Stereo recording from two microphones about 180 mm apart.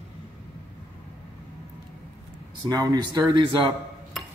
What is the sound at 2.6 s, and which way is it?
Speech, 20° right (ahead or behind).